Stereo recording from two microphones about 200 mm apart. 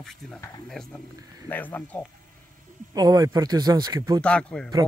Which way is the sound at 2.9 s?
20° right (ahead or behind).